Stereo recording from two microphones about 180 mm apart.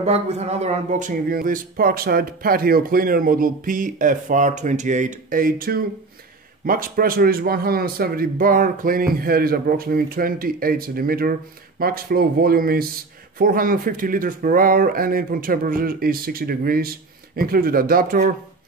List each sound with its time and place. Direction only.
0.0 s a man's voice: 35° right (ahead or behind)